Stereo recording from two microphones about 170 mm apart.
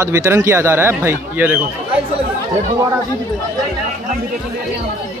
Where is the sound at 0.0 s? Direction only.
15° right (ahead or behind).